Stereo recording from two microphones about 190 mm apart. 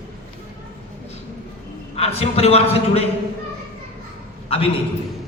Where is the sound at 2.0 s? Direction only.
35° left (ahead or behind).